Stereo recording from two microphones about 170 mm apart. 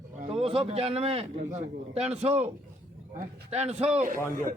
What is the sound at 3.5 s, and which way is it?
Speech, 40° right (ahead or behind).